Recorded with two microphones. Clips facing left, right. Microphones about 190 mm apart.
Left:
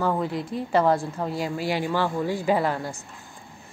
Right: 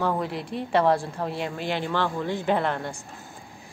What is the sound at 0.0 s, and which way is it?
A woman's voice, centre (ahead or behind).